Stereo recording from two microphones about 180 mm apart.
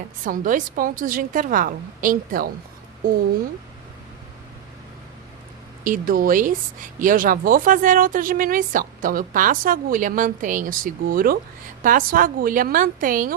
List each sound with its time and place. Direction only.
0.3 s speech: 50° right (ahead or behind)
5.8 s speech: 50° right (ahead or behind)